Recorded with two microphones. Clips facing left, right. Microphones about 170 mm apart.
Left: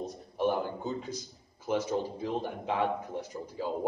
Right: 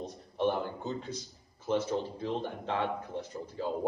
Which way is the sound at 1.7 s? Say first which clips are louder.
Even; 10° left (ahead or behind).